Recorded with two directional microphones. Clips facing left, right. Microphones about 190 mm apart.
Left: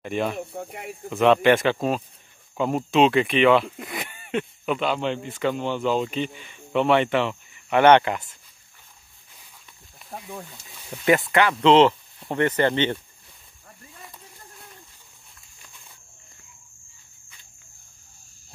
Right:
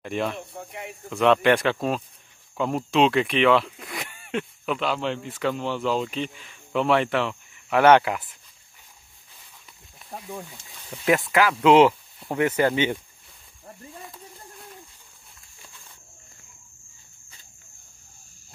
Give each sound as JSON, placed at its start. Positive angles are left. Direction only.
{"t": 0.0, "sound": "speech", "side_deg": 0}
{"t": 0.5, "sound": "speech", "side_deg": 55}
{"t": 1.1, "sound": "speech", "side_deg": 0}
{"t": 10.0, "sound": "speech", "side_deg": 0}
{"t": 14.0, "sound": "a sound", "side_deg": 0}